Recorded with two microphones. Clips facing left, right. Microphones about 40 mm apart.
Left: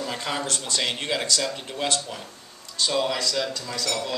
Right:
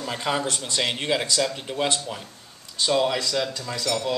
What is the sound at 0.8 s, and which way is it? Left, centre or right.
A man's voice, centre.